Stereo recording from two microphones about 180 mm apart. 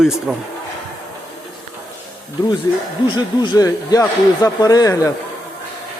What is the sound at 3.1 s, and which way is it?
Speech, 25° left (ahead or behind).